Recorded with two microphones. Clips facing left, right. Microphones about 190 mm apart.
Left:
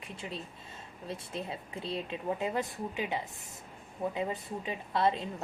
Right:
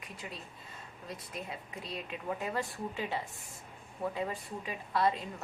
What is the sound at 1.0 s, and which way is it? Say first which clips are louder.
A woman's voice: left 4 dB; 25° left (ahead or behind).